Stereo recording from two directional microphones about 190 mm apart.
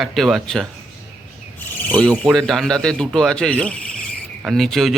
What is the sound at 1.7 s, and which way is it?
Speech, 10° left (ahead or behind).